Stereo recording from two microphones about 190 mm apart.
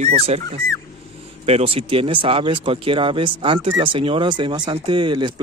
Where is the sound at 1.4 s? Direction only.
35° right (ahead or behind).